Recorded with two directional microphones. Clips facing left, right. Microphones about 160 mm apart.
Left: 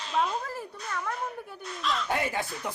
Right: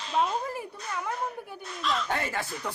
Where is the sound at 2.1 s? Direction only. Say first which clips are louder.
Left 2 dB; 15° left (ahead or behind).